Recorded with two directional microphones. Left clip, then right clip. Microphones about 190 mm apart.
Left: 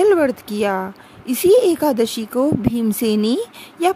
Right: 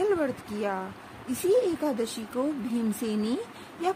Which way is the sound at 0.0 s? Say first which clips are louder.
Left 12 dB; 55° left (ahead or behind).